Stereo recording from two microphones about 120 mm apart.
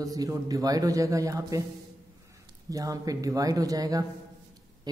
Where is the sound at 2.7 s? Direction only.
30° right (ahead or behind).